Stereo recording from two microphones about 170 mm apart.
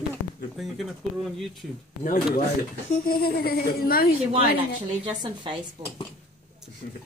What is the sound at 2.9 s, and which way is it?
Speech, 60° left (ahead or behind).